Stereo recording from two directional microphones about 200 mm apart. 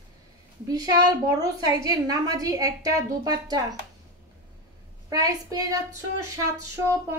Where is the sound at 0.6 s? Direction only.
20° right (ahead or behind).